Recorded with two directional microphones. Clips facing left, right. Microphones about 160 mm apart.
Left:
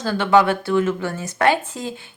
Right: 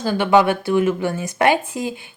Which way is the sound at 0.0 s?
15° right (ahead or behind).